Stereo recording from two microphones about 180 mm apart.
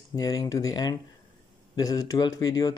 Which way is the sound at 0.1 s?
20° left (ahead or behind).